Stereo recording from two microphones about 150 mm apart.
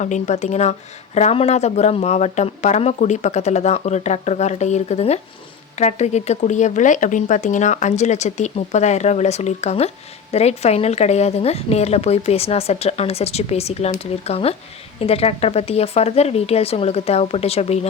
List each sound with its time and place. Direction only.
0.0 s speech: 50° left (ahead or behind)